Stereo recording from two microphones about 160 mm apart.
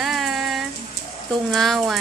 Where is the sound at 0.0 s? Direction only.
Centre (ahead or behind).